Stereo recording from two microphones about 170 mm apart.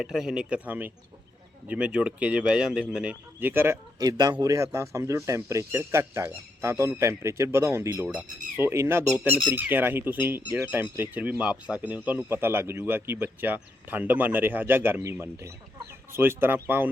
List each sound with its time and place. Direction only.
0.0 s speech: 5° right (ahead or behind)